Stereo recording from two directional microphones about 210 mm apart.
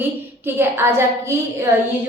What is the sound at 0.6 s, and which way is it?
A woman's voice, 10° right (ahead or behind).